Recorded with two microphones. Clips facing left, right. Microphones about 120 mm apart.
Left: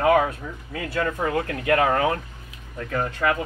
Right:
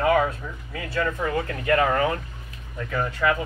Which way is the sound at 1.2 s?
55° left (ahead or behind).